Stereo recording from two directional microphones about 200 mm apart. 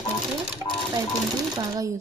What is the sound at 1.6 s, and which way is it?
Speech, 15° right (ahead or behind).